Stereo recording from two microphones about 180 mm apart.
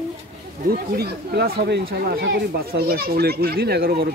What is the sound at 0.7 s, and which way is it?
Speech, 60° right (ahead or behind).